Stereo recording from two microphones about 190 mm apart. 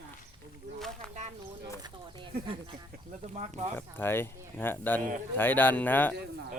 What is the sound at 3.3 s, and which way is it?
Speech, 35° right (ahead or behind).